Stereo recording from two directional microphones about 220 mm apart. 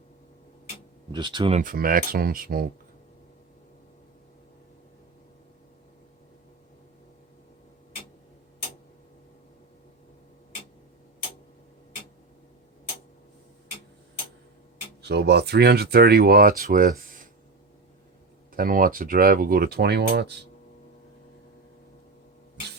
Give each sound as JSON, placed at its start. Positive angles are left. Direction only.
{"t": 1.1, "sound": "speech", "side_deg": -20}
{"t": 1.6, "sound": "speech", "side_deg": -40}
{"t": 15.0, "sound": "speech", "side_deg": -50}
{"t": 18.5, "sound": "speech", "side_deg": -40}